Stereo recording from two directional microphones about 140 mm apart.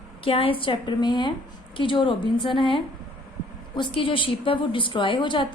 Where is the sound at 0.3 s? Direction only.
40° left (ahead or behind).